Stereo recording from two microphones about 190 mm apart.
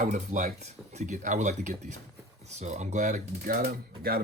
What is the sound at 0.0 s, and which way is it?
Speech, 40° right (ahead or behind).